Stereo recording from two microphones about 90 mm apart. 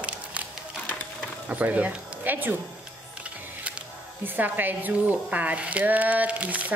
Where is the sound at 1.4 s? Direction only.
15° right (ahead or behind).